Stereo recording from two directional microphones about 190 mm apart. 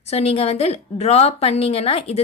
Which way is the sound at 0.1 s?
30° left (ahead or behind).